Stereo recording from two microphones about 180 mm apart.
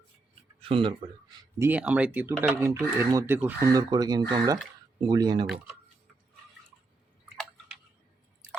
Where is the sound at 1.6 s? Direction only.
10° right (ahead or behind).